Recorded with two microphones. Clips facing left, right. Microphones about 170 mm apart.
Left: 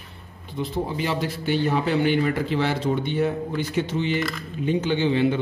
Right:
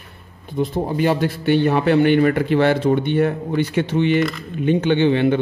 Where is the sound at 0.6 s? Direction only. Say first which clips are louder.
Right 7 dB; 50° right (ahead or behind).